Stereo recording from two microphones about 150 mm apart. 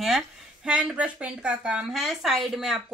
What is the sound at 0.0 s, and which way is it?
Speech, 5° right (ahead or behind).